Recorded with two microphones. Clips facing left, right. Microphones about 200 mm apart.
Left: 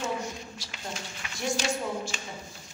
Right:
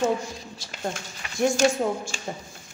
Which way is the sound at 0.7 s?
50° right (ahead or behind).